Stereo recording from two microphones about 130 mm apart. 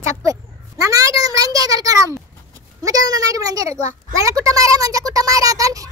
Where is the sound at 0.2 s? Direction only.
25° right (ahead or behind).